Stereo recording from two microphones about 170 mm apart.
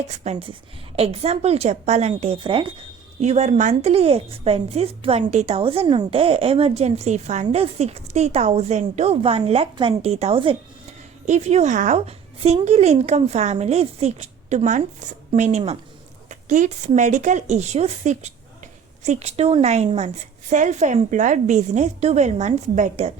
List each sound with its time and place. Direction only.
0.1 s a woman's voice: 35° right (ahead or behind)